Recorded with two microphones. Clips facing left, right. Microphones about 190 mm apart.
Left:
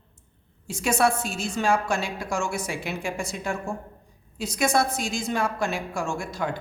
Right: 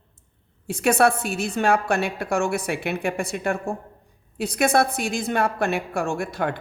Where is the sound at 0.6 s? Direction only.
60° right (ahead or behind).